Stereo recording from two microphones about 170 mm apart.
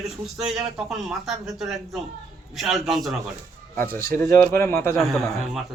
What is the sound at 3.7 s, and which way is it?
Speech, 15° left (ahead or behind).